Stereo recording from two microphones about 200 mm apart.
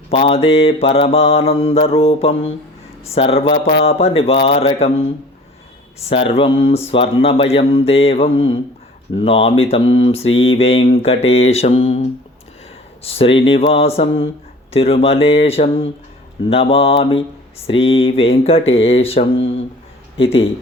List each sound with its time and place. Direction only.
0.1 s speech: 30° left (ahead or behind)
11.3 s mantra: 30° left (ahead or behind)
13.0 s speech: 30° left (ahead or behind)